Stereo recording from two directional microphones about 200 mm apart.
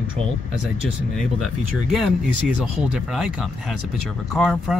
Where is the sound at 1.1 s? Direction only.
Centre (ahead or behind).